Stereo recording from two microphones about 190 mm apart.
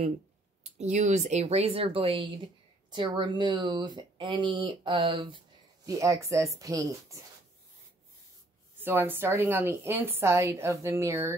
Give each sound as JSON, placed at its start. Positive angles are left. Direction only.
{"t": 0.7, "sound": "a woman's voice", "side_deg": -40}
{"t": 8.8, "sound": "a woman's voice", "side_deg": -10}